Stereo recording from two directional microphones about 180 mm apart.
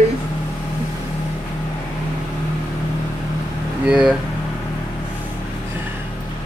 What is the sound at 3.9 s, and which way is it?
Speech, 5° right (ahead or behind).